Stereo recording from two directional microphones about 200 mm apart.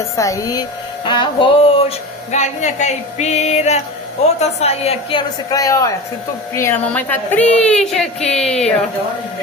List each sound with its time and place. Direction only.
0.0 s a woman's voice: 15° left (ahead or behind)
1.0 s music: 25° left (ahead or behind)
2.3 s speech: 35° left (ahead or behind)
5.5 s a woman's voice: 15° left (ahead or behind)